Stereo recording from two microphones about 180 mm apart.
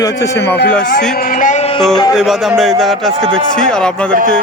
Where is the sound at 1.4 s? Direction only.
45° left (ahead or behind).